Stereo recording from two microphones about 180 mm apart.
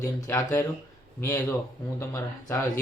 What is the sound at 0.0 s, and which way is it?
Speech, 15° left (ahead or behind).